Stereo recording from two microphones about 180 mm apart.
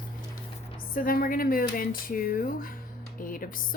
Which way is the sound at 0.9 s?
55° left (ahead or behind).